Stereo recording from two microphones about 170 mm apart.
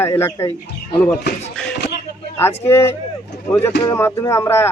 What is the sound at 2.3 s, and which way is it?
Speech, 15° left (ahead or behind).